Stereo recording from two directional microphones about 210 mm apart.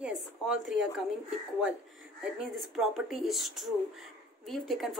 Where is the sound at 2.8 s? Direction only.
Centre (ahead or behind).